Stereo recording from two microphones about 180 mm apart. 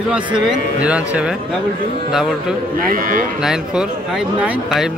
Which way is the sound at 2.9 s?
50° right (ahead or behind).